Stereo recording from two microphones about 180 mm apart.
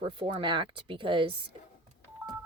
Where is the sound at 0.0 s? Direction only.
30° right (ahead or behind).